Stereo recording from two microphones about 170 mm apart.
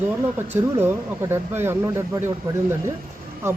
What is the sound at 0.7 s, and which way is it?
Speech, 15° right (ahead or behind).